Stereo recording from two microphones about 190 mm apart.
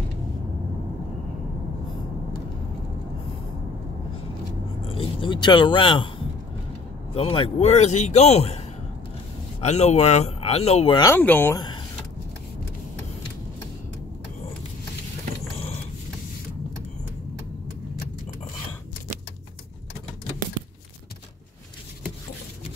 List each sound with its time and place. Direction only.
4.8 s a sound: 30° left (ahead or behind)
7.2 s a man's voice: 30° left (ahead or behind)
11.0 s speech: 10° left (ahead or behind)
11.5 s power windows: 20° left (ahead or behind)